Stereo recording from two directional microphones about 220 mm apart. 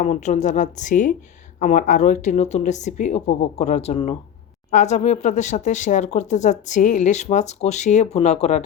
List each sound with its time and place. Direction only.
0.0 s speech: 30° left (ahead or behind)